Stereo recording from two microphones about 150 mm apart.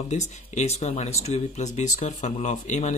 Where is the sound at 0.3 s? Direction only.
50° left (ahead or behind).